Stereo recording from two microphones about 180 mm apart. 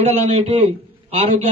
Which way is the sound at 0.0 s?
35° right (ahead or behind).